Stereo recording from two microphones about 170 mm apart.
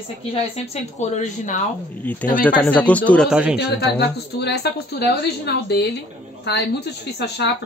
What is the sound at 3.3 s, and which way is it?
Speech, 5° right (ahead or behind).